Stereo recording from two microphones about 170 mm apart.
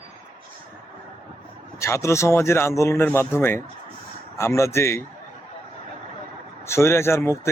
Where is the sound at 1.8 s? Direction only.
15° left (ahead or behind).